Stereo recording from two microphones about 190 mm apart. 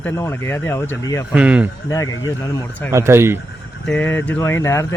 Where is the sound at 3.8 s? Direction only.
10° left (ahead or behind).